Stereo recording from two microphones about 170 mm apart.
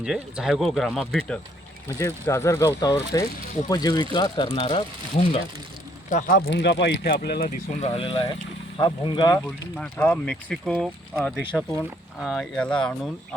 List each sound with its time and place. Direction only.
0.0 s speech: 5° right (ahead or behind)
2.0 s speech: 15° left (ahead or behind); by 5.4 s 35° left (ahead or behind)
6.1 s speech: 55° left (ahead or behind)
7.8 s speech: 35° left (ahead or behind)
9.5 s speech: 5° left (ahead or behind)